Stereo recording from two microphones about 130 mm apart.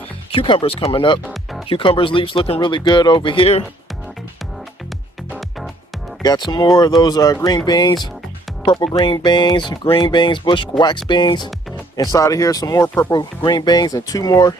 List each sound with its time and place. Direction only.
0.3 s speech: 40° left (ahead or behind)
6.5 s speech: 35° left (ahead or behind)